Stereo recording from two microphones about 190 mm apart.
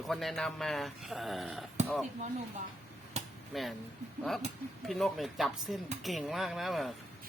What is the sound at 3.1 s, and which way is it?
Chop, 35° right (ahead or behind).